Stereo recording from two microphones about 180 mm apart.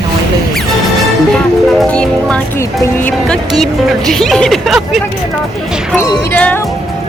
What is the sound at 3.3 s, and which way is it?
Speech, centre (ahead or behind).